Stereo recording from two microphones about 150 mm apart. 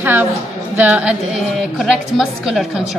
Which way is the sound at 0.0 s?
10° right (ahead or behind).